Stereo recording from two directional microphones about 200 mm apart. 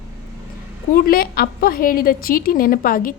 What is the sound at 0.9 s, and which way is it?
A woman's voice, 45° left (ahead or behind).